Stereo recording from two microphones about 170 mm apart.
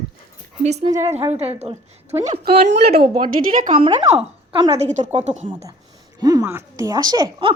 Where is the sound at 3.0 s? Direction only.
30° right (ahead or behind).